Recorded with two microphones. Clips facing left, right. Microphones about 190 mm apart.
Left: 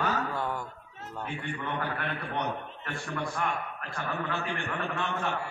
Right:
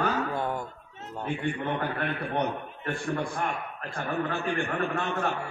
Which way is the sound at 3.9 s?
45° right (ahead or behind).